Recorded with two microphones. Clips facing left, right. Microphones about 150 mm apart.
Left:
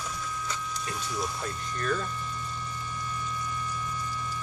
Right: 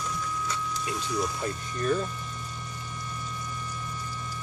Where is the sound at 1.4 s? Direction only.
30° right (ahead or behind).